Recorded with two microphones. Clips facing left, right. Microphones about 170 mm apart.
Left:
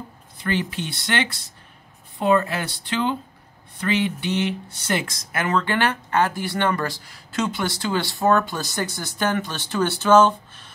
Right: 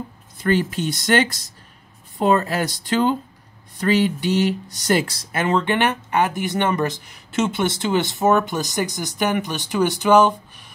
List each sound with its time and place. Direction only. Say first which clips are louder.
0.4 s speech: right 5 dB; 45° right (ahead or behind); by 10.7 s 15° right (ahead or behind)